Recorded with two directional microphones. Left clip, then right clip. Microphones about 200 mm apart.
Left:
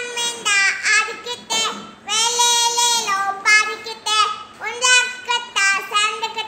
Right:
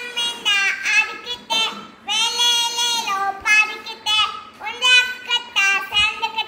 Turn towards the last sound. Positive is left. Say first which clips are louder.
# even
turn(degrees=50)  # may be behind; listen again after turning